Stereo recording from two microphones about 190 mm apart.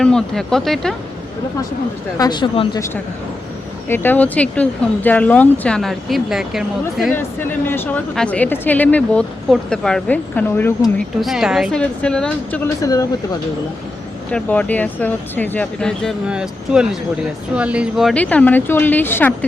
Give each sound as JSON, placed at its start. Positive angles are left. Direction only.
{"t": 0.0, "sound": "speech", "side_deg": 5}
{"t": 2.1, "sound": "a woman's voice", "side_deg": 20}
{"t": 7.1, "sound": "a woman's voice", "side_deg": 10}
{"t": 11.2, "sound": "speech", "side_deg": 0}
{"t": 14.3, "sound": "a woman's voice", "side_deg": 5}